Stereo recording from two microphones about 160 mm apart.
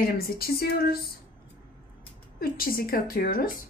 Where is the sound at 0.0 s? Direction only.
65° left (ahead or behind).